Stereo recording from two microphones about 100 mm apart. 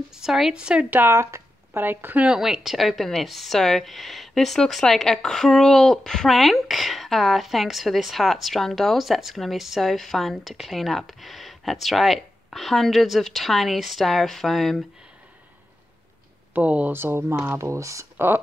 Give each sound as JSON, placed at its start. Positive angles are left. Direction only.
{"t": 0.1, "sound": "speech", "side_deg": -5}
{"t": 16.5, "sound": "speech", "side_deg": -15}